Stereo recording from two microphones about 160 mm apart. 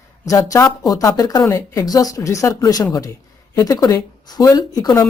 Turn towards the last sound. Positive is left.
turn(degrees=25)  # may be behind; listen again after turning